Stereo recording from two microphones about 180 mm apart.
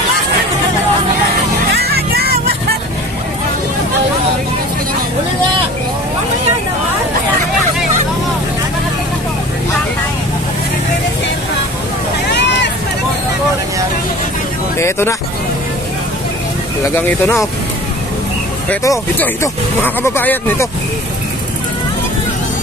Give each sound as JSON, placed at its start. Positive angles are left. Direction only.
{"t": 1.8, "sound": "music", "side_deg": -60}
{"t": 12.3, "sound": "vehicle", "side_deg": 75}
{"t": 14.8, "sound": "hubbub", "side_deg": 15}
{"t": 16.9, "sound": "speech", "side_deg": 15}
{"t": 18.9, "sound": "speech", "side_deg": 15}